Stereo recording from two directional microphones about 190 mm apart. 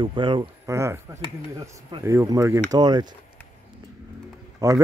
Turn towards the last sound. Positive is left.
turn(degrees=-15)  # may be behind; listen again after turning